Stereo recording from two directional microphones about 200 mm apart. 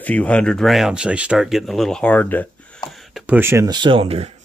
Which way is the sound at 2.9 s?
Centre (ahead or behind).